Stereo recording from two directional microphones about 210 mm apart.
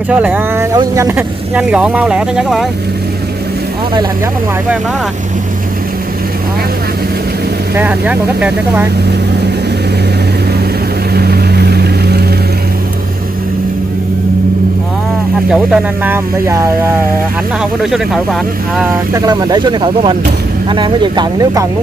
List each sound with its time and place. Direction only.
0.1 s speech: 5° right (ahead or behind)
7.7 s speech: 5° right (ahead or behind)
11.1 s vehicle: 50° right (ahead or behind)
15.5 s speech: 5° right (ahead or behind)
17.9 s speech: centre (ahead or behind)
19.1 s speech: 20° right (ahead or behind)